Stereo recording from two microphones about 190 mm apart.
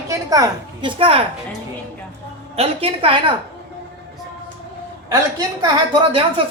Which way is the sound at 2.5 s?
30° right (ahead or behind).